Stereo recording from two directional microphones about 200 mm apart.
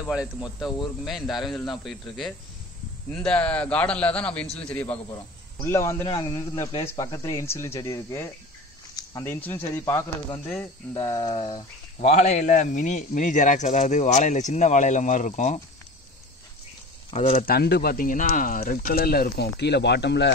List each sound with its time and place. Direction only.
0.1 s speech: 5° right (ahead or behind); by 15.6 s 35° left (ahead or behind)
17.1 s speech: 35° left (ahead or behind)
17.5 s speech: 50° left (ahead or behind)